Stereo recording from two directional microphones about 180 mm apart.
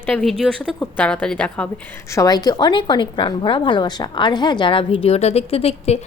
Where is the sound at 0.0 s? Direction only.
5° left (ahead or behind).